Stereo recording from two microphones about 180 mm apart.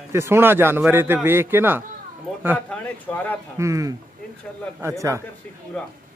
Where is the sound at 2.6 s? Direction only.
10° left (ahead or behind).